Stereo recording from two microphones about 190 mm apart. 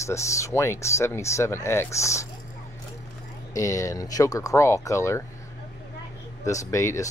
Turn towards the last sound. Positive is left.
turn(degrees=15)  # may be behind; listen again after turning